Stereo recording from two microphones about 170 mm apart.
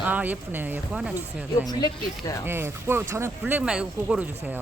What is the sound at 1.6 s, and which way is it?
Speech, 20° left (ahead or behind).